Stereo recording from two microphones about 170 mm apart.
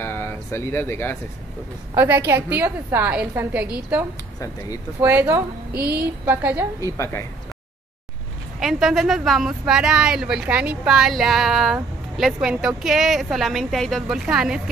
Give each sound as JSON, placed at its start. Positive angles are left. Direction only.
{"t": 0.0, "sound": "a sound", "side_deg": 15}
{"t": 2.0, "sound": "a woman's voice", "side_deg": -10}
{"t": 5.0, "sound": "a woman's voice", "side_deg": -15}
{"t": 5.7, "sound": "a sound", "side_deg": -65}
{"t": 6.2, "sound": "a woman's voice", "side_deg": -10}
{"t": 6.8, "sound": "a woman's voice", "side_deg": 15}
{"t": 8.5, "sound": "speech", "side_deg": 0}